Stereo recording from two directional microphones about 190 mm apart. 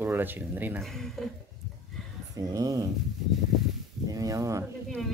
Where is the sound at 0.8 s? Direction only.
Centre (ahead or behind).